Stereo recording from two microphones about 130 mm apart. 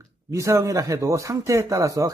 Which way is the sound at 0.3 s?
25° right (ahead or behind).